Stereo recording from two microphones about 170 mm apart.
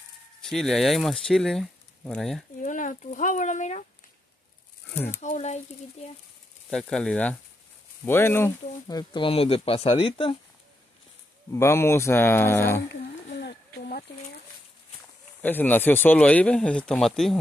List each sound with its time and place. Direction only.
0.4 s speech: centre (ahead or behind)
2.6 s speech: 50° left (ahead or behind)
5.2 s speech: 45° left (ahead or behind)
6.7 s speech: 5° left (ahead or behind)
8.8 s speech: 25° left (ahead or behind)
11.5 s speech: 15° left (ahead or behind)
12.8 s a sound: 85° left; by 14.0 s 65° left (ahead or behind)
15.4 s speech: 10° left (ahead or behind)